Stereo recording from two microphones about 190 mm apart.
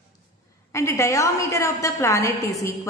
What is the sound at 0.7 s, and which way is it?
A woman's voice, 15° left (ahead or behind).